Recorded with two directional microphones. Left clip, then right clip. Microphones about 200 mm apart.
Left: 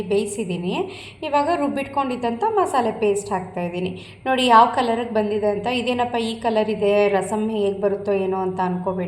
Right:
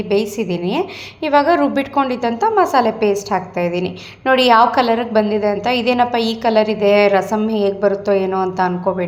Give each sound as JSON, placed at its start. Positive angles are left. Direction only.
{"t": 0.1, "sound": "a woman's voice", "side_deg": -25}